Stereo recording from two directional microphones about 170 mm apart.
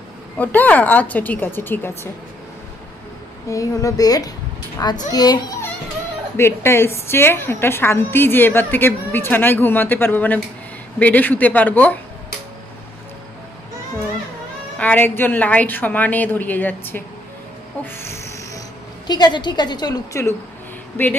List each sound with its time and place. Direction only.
0.4 s a woman's voice: 10° left (ahead or behind)
3.4 s a woman's voice: 20° left (ahead or behind)
14.8 s a woman's voice: 10° left (ahead or behind)
17.8 s a sound: 15° left (ahead or behind)
19.0 s a woman's voice: 25° left (ahead or behind)